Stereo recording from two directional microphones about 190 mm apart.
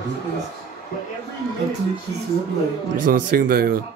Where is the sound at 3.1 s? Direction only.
50° right (ahead or behind).